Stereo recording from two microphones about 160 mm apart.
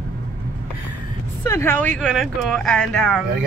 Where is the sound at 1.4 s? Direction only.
15° left (ahead or behind).